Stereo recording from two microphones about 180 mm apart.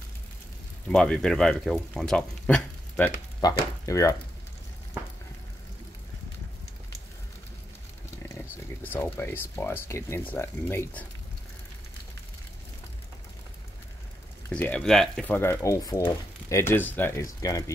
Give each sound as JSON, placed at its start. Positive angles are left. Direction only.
{"t": 0.8, "sound": "speech", "side_deg": 5}
{"t": 3.4, "sound": "speech", "side_deg": 20}
{"t": 8.3, "sound": "speech", "side_deg": 10}
{"t": 14.5, "sound": "speech", "side_deg": 5}